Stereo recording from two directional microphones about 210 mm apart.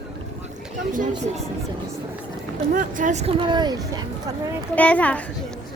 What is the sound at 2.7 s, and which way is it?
Speech, 40° right (ahead or behind).